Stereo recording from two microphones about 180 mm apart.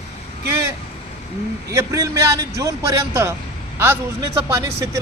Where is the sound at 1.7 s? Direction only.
15° right (ahead or behind).